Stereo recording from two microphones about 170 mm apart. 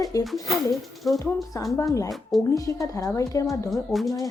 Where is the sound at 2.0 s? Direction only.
Centre (ahead or behind).